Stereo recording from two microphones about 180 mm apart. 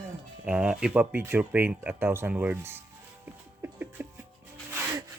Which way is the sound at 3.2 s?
10° right (ahead or behind).